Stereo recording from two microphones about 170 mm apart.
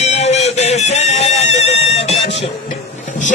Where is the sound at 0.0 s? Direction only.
40° left (ahead or behind).